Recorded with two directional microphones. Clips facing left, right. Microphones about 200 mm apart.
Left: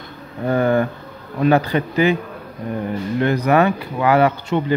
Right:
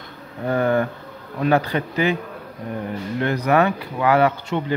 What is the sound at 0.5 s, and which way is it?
A man's voice, 15° left (ahead or behind).